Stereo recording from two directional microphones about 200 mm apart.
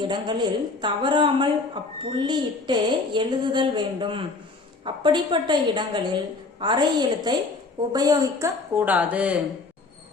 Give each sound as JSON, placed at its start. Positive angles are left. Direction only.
{"t": 0.0, "sound": "a woman's voice", "side_deg": -20}